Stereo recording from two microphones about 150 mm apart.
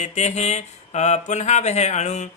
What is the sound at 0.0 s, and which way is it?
Speech, 50° left (ahead or behind).